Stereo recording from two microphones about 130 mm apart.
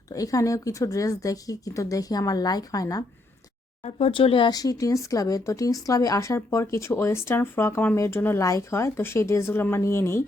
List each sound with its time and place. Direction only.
0.1 s speech: 25° left (ahead or behind)
3.8 s speech: 50° left (ahead or behind); by 10.2 s 20° left (ahead or behind)